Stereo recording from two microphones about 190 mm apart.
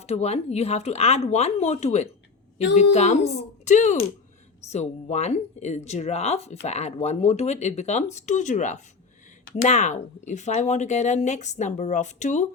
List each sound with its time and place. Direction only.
0.0 s speech: 35° left (ahead or behind)